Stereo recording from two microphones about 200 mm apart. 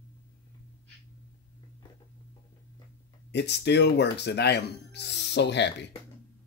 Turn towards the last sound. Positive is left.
turn(degrees=60)  # may be behind; listen again after turning